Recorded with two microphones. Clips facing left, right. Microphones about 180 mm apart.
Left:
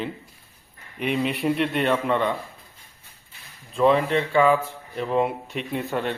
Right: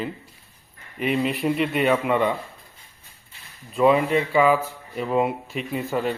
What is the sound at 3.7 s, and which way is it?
Speech, 5° right (ahead or behind).